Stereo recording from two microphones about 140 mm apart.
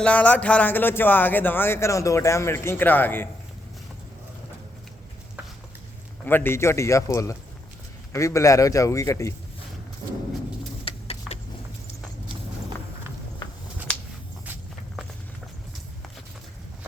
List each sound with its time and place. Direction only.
0.0 s speech: 10° left (ahead or behind)
6.2 s a man's voice: 15° left (ahead or behind)
10.8 s vehicle: 45° left (ahead or behind)